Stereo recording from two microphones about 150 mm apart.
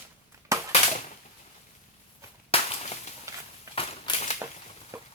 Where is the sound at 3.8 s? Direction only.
40° left (ahead or behind).